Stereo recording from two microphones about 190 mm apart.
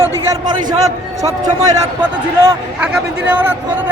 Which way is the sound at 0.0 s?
20° right (ahead or behind).